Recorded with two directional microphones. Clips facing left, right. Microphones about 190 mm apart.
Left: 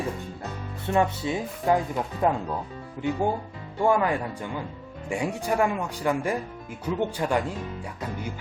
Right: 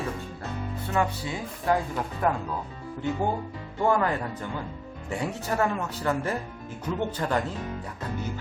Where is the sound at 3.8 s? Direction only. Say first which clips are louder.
Left 2 dB; 10° left (ahead or behind).